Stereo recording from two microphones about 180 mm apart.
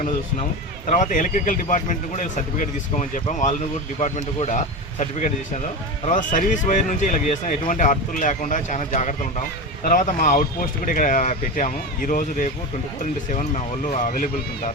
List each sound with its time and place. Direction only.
0.9 s speech: 40° left (ahead or behind)
13.9 s speech: 45° left (ahead or behind)